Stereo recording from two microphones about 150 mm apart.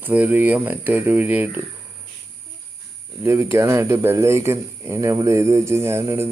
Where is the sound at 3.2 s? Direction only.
15° right (ahead or behind).